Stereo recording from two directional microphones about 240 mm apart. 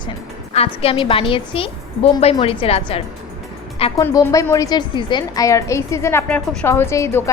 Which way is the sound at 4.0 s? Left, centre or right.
Centre.